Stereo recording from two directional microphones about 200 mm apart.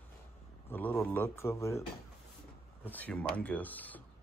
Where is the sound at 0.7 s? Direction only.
10° left (ahead or behind).